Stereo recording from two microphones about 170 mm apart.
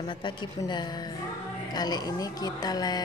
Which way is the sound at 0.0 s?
25° left (ahead or behind).